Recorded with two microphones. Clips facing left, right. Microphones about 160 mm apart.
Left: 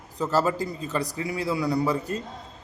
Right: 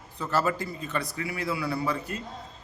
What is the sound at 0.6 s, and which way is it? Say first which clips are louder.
A man's voice: left 4 dB; 35° left (ahead or behind).